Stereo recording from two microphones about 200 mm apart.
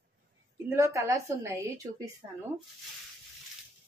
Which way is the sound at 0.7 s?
15° right (ahead or behind).